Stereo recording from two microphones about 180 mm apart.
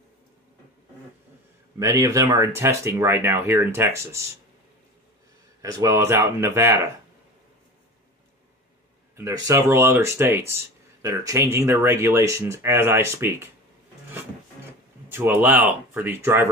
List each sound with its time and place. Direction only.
1.8 s speech: 15° right (ahead or behind)
5.6 s speech: 20° right (ahead or behind)
9.1 s speech: 20° right (ahead or behind)
15.0 s speech: 10° right (ahead or behind)